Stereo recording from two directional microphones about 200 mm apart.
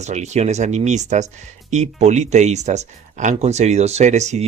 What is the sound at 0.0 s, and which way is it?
Speech, 35° right (ahead or behind).